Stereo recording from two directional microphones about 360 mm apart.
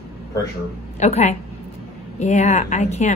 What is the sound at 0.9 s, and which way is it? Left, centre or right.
A woman's voice, centre.